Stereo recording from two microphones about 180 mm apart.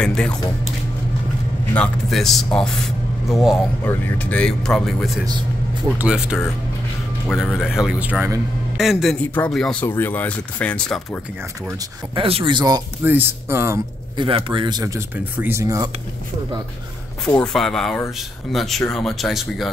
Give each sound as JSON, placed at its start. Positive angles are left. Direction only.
{"t": 0.0, "sound": "a man's voice", "side_deg": 5}
{"t": 1.7, "sound": "a man's voice", "side_deg": 5}
{"t": 12.2, "sound": "speech", "side_deg": -30}
{"t": 13.0, "sound": "speech", "side_deg": -10}
{"t": 14.1, "sound": "speech", "side_deg": -25}
{"t": 17.4, "sound": "a man's voice", "side_deg": 5}